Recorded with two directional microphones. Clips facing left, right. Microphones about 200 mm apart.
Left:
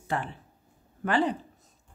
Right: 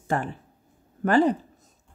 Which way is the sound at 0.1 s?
45° right (ahead or behind).